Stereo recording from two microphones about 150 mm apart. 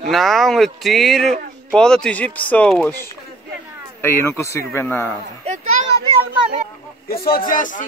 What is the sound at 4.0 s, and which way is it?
Speech, 15° left (ahead or behind).